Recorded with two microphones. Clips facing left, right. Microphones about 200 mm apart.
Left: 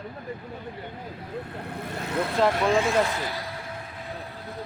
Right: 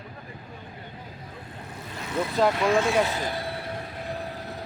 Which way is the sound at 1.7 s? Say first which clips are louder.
Left 6 dB; 55° left (ahead or behind).